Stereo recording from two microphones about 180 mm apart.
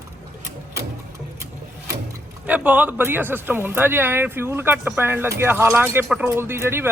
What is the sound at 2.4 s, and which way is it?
Speech, 10° right (ahead or behind).